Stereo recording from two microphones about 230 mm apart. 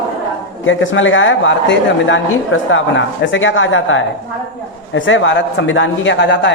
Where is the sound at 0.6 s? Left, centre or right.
Left.